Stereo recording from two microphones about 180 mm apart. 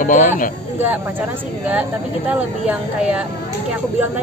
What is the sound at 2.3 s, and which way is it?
Speech, 5° right (ahead or behind).